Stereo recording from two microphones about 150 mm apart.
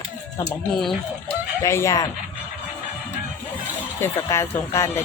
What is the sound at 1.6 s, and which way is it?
Speech, 20° left (ahead or behind).